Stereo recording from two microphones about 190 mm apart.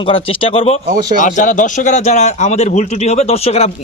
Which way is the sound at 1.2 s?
45° left (ahead or behind).